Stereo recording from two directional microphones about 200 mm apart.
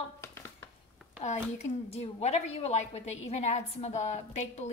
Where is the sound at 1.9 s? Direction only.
30° left (ahead or behind).